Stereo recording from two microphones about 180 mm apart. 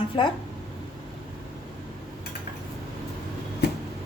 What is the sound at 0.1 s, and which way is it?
Speech, 25° left (ahead or behind).